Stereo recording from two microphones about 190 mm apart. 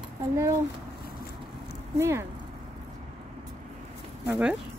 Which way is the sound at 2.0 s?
15° right (ahead or behind).